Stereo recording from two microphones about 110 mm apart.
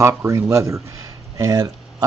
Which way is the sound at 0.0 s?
25° right (ahead or behind).